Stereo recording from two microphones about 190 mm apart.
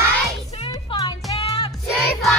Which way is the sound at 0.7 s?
20° left (ahead or behind).